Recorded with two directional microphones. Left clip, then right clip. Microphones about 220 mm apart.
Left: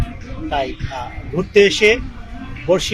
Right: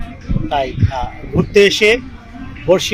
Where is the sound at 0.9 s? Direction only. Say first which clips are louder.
Right 4 dB; 30° right (ahead or behind).